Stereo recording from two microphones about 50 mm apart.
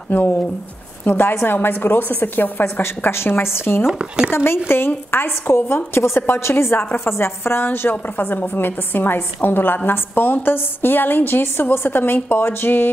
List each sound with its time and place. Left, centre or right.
0.1 s a woman's voice: left
2.8 s a woman's voice: left
3.8 s speech: centre
4.3 s a woman's voice: left
5.9 s a woman's voice: left
7.9 s a woman's voice: left